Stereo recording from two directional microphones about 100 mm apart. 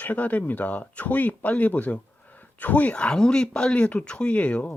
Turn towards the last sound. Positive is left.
turn(degrees=15)  # may be behind; listen again after turning